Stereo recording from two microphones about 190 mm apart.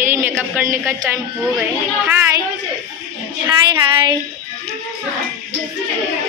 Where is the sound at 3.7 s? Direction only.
20° right (ahead or behind).